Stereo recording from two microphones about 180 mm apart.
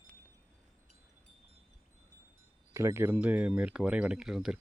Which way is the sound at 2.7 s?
15° right (ahead or behind).